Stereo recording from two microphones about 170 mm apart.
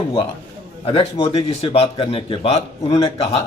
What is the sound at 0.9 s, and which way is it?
Speech, 35° left (ahead or behind).